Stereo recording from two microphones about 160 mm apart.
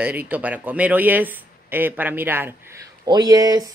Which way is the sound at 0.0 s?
10° right (ahead or behind).